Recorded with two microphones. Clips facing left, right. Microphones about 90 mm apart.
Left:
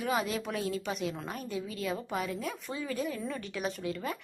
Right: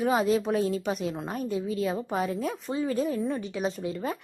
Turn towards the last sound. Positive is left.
turn(degrees=-30)  # may be behind; listen again after turning